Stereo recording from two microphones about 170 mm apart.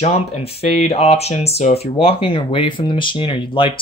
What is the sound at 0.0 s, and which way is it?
Speech, 35° left (ahead or behind).